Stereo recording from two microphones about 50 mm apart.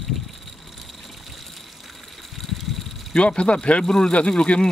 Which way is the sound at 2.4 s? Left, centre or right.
Centre.